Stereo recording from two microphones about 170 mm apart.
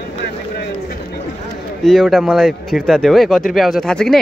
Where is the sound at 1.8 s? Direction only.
Centre (ahead or behind).